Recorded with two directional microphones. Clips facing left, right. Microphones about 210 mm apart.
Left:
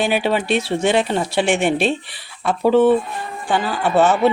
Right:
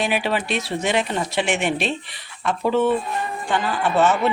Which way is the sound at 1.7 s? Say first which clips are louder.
Left 5 dB; centre (ahead or behind).